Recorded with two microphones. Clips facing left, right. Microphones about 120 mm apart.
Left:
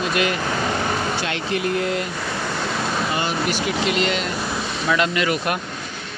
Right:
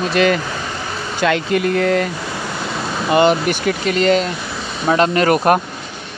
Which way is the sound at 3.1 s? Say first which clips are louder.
Right 9 dB; 65° right (ahead or behind).